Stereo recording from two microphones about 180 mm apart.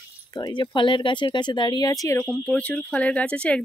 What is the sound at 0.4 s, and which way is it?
Speech, 25° left (ahead or behind).